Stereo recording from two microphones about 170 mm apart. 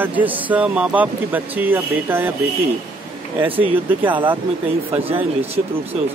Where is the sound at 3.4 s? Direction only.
10° right (ahead or behind).